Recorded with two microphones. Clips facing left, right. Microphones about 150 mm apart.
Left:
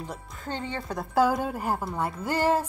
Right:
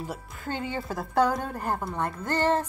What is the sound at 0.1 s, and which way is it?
Speech, 5° right (ahead or behind).